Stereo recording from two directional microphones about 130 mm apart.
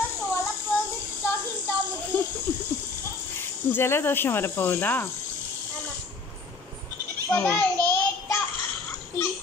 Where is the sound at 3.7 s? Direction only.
15° left (ahead or behind).